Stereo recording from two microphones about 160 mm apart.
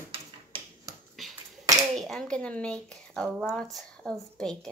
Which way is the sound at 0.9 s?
20° right (ahead or behind).